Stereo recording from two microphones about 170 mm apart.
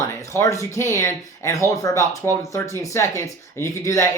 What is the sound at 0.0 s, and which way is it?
Speech, 20° left (ahead or behind).